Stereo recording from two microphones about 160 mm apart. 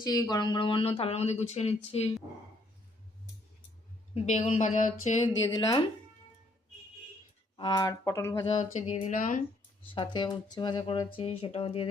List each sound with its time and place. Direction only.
0.0 s speech: 25° left (ahead or behind); by 2.1 s 40° left (ahead or behind)
4.1 s speech: 45° left (ahead or behind)
5.2 s speech: 25° left (ahead or behind)
7.5 s speech: 30° left (ahead or behind)
8.4 s speech: 40° left (ahead or behind)
9.9 s speech: 30° left (ahead or behind)